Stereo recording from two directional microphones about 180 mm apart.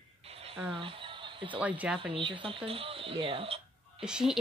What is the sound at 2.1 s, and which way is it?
Speech, 30° right (ahead or behind).